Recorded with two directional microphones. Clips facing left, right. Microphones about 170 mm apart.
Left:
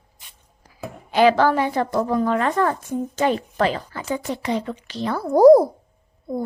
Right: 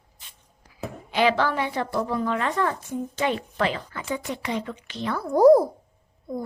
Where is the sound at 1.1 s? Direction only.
45° left (ahead or behind).